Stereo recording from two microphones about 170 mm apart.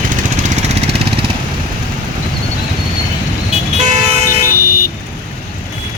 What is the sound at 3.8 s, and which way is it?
Vehicle, 45° right (ahead or behind).